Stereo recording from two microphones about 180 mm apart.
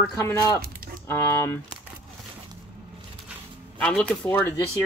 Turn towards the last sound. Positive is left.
turn(degrees=10)  # may be behind; listen again after turning